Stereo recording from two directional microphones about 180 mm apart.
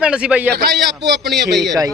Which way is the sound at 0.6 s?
70° right (ahead or behind).